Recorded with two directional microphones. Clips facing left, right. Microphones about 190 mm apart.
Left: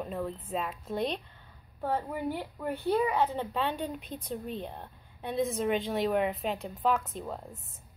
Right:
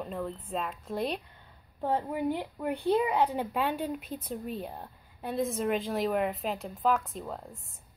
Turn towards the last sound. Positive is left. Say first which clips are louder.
# left 1 dB
turn(degrees=0)  # may be behind; listen again after turning